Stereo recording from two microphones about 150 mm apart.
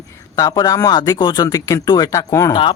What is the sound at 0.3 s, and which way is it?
Speech, 25° left (ahead or behind).